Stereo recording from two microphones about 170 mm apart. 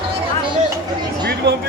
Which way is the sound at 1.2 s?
75° right (ahead or behind).